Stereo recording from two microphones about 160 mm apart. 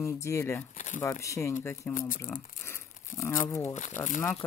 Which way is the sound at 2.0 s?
60° left (ahead or behind).